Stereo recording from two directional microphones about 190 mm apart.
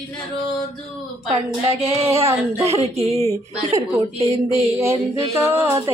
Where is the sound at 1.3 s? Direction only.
30° right (ahead or behind).